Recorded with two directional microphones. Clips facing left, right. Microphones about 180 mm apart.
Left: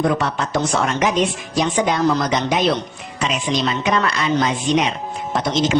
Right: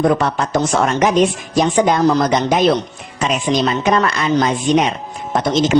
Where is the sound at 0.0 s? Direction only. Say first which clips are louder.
Right 4 dB; 50° right (ahead or behind).